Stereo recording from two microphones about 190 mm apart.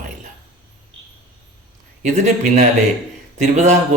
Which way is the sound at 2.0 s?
40° right (ahead or behind).